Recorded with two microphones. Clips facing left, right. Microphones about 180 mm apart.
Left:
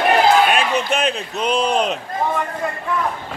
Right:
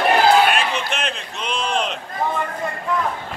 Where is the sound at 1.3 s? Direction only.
40° left (ahead or behind).